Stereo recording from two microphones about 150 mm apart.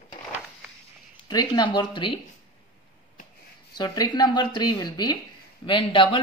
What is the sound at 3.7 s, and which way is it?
A man's voice, 25° left (ahead or behind).